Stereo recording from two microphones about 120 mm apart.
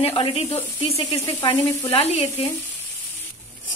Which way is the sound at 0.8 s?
55° left (ahead or behind).